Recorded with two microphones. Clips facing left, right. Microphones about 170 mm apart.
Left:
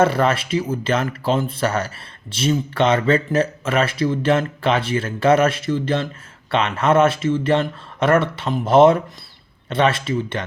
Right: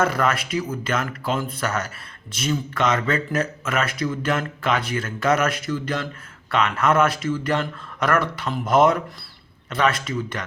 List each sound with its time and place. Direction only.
0.0 s speech: 30° left (ahead or behind)